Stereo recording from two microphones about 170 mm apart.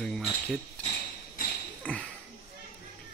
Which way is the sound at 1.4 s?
55° left (ahead or behind).